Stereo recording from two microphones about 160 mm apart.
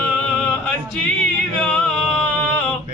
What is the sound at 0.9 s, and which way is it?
Music, 10° left (ahead or behind).